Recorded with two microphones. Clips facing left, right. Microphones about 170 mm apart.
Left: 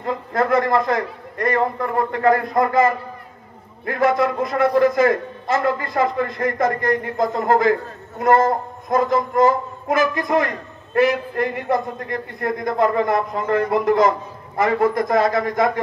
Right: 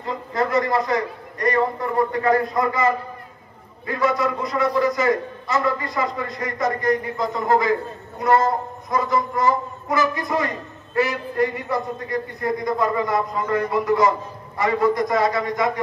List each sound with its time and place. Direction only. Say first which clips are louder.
0.0 s a man's voice: left 3 dB; 50° left (ahead or behind)
11.1 s a man's voice: left 1 dB; 55° left (ahead or behind)